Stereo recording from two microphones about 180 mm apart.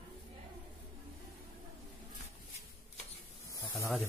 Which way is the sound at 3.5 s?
15° left (ahead or behind).